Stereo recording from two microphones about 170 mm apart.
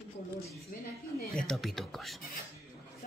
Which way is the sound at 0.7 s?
55° left (ahead or behind).